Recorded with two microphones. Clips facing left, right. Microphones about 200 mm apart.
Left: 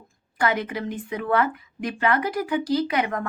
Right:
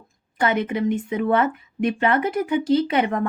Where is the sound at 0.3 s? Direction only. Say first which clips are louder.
Right 3 dB; 25° right (ahead or behind).